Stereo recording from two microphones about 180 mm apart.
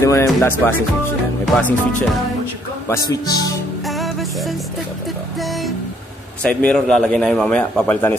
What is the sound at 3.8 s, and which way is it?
Music, centre (ahead or behind).